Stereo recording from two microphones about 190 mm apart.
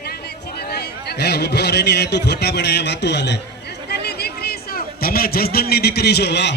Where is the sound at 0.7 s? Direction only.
60° left (ahead or behind).